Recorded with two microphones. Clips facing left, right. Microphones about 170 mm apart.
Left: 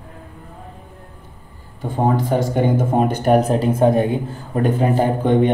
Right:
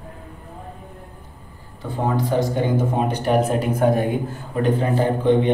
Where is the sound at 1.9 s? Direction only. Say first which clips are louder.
Left 3 dB; 50° left (ahead or behind).